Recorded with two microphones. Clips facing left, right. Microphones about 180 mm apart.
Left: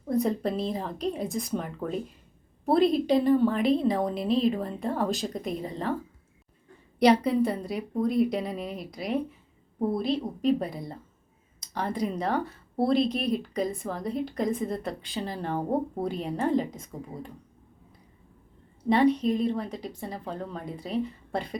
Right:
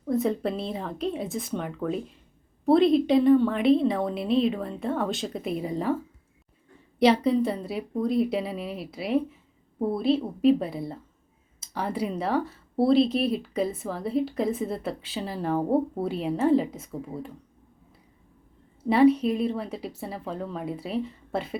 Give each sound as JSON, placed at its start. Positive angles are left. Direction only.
{"t": 0.1, "sound": "a sound", "side_deg": 0}
{"t": 0.5, "sound": "speech", "side_deg": 0}
{"t": 7.0, "sound": "speech", "side_deg": 0}
{"t": 18.9, "sound": "a woman's voice", "side_deg": -10}